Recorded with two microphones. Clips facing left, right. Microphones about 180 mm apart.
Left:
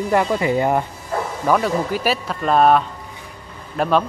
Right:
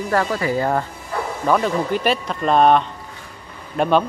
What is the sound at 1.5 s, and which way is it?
Speech, 5° left (ahead or behind).